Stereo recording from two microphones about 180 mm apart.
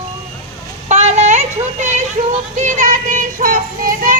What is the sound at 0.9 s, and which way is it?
Child singing, 40° right (ahead or behind).